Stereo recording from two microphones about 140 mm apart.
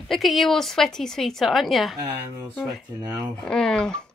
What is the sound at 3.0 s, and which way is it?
Speech, 25° right (ahead or behind).